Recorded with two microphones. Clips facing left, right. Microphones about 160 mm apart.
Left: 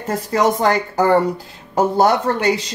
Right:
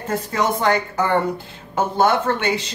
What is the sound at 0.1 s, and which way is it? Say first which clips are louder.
Speech: left 4 dB; 35° left (ahead or behind).